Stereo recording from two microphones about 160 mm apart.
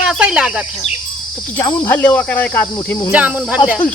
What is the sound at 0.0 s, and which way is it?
Speech, 5° right (ahead or behind).